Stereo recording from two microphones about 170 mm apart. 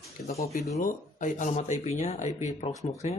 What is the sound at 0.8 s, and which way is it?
Speech, 50° left (ahead or behind).